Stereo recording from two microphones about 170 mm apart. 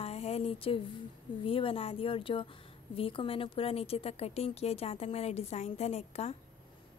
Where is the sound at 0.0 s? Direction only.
35° left (ahead or behind).